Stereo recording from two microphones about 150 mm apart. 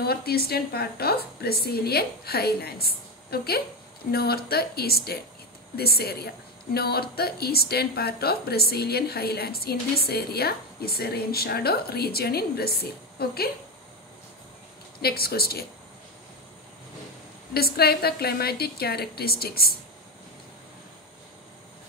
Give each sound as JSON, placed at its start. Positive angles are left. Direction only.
{"t": 0.0, "sound": "a woman's voice", "side_deg": 90}
{"t": 15.0, "sound": "a woman's voice", "side_deg": 90}
{"t": 17.6, "sound": "a woman's voice", "side_deg": 90}